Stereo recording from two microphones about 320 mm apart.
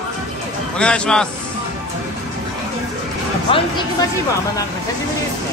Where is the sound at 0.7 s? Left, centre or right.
Centre.